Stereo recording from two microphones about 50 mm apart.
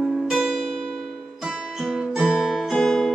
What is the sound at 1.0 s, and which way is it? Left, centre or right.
Music, centre.